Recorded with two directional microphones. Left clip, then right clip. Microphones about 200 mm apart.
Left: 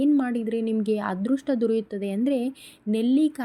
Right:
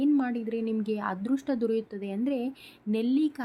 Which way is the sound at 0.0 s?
15° left (ahead or behind).